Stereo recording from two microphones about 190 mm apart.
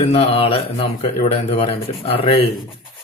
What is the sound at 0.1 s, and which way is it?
Speech, 30° left (ahead or behind).